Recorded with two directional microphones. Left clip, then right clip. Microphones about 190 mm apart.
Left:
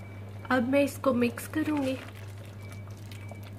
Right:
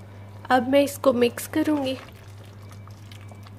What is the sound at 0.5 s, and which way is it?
A woman's voice, 55° right (ahead or behind).